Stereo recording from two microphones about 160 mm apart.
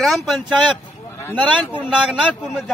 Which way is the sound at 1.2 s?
10° left (ahead or behind).